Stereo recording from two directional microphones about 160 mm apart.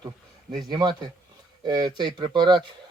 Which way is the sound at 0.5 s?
25° right (ahead or behind).